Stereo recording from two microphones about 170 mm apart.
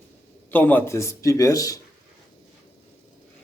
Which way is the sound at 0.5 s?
10° left (ahead or behind).